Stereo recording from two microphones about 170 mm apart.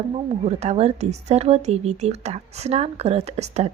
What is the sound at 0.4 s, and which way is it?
Speech, 40° right (ahead or behind).